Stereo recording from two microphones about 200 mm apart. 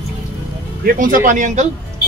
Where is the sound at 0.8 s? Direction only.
45° right (ahead or behind).